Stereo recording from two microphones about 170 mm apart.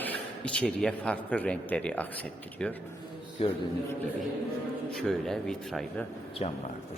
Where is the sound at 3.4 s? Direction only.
35° left (ahead or behind).